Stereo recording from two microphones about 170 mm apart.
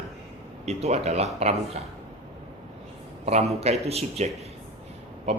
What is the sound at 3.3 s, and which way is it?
A man's voice, 40° right (ahead or behind).